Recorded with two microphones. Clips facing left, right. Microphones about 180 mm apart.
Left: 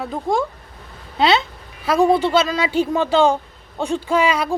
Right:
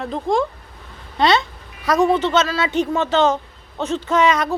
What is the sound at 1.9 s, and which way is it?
Speech, 30° left (ahead or behind).